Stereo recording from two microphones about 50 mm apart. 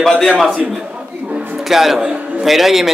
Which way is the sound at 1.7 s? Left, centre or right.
Centre.